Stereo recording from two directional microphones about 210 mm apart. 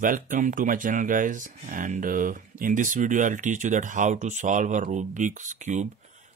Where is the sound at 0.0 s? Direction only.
40° right (ahead or behind).